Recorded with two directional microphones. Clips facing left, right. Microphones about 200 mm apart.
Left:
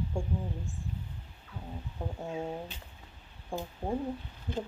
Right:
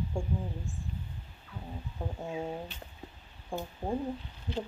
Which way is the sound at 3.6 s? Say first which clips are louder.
Even; centre (ahead or behind).